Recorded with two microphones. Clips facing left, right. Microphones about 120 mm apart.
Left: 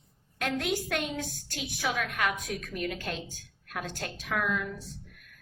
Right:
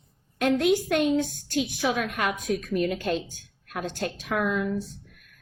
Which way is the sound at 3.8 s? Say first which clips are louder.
Right 7 dB; 25° right (ahead or behind).